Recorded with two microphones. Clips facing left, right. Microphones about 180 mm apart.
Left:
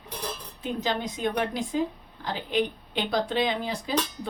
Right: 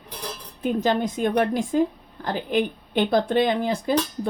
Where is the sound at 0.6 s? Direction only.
50° right (ahead or behind).